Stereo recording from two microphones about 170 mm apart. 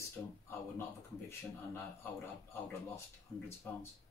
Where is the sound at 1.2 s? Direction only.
15° left (ahead or behind).